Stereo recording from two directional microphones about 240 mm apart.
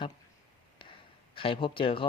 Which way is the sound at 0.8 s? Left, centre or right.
Left.